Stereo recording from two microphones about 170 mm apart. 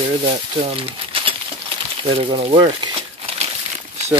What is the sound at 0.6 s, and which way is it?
Crumpling, 30° right (ahead or behind).